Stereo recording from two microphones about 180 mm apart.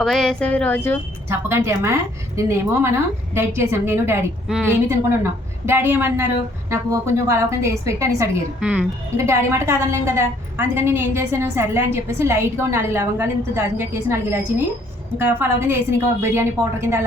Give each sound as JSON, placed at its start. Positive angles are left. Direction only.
{"t": 0.0, "sound": "speech", "side_deg": 0}
{"t": 1.3, "sound": "a woman's voice", "side_deg": -15}
{"t": 4.4, "sound": "a woman's voice", "side_deg": 0}
{"t": 8.6, "sound": "a woman's voice", "side_deg": -5}